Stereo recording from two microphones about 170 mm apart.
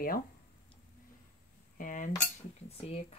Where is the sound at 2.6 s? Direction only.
35° left (ahead or behind).